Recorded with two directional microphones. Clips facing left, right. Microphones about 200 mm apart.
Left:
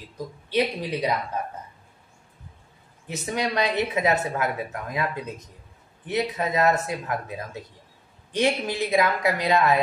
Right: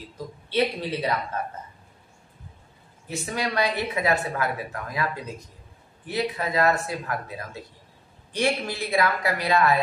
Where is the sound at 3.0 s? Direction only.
20° left (ahead or behind).